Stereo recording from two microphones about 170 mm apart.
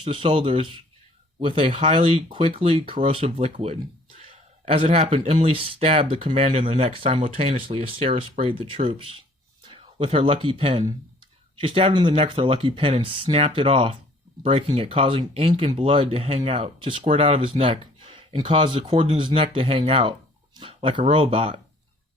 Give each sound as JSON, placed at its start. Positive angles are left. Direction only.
{"t": 0.0, "sound": "speech", "side_deg": -30}